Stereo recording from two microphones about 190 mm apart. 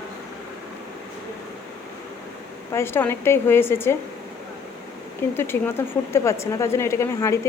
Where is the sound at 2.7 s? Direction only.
10° left (ahead or behind).